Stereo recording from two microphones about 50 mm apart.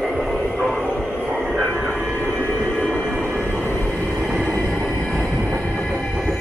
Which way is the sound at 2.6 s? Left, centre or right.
Centre.